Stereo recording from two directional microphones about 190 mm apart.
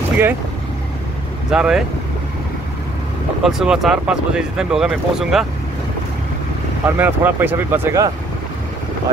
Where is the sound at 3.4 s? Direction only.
Centre (ahead or behind).